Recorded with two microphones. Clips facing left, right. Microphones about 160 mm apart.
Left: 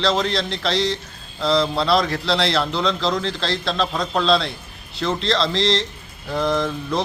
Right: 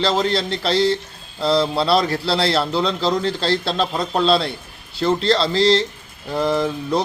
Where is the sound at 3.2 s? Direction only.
35° right (ahead or behind).